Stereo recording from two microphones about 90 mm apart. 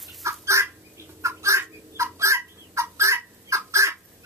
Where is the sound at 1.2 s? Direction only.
35° right (ahead or behind).